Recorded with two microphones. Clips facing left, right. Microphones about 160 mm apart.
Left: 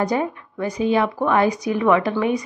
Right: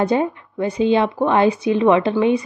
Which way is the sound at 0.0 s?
25° right (ahead or behind).